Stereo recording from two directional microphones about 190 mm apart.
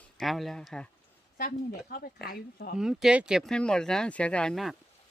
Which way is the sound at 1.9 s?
50° left (ahead or behind).